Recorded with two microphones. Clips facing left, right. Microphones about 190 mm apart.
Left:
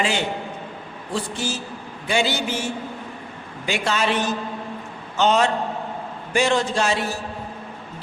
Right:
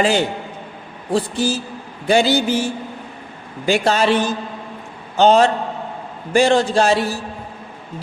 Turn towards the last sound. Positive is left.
turn(degrees=-35)  # may be behind; listen again after turning